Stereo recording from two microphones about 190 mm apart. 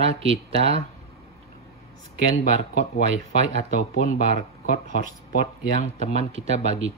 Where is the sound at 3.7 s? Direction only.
40° left (ahead or behind).